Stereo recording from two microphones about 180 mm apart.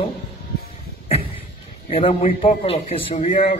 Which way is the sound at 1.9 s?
30° left (ahead or behind).